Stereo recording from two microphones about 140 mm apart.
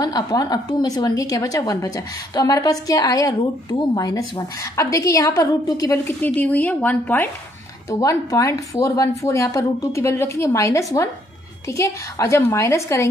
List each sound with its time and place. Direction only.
0.0 s a woman's voice: 25° left (ahead or behind)
6.0 s speech: 10° left (ahead or behind)
7.9 s a woman's voice: 25° left (ahead or behind)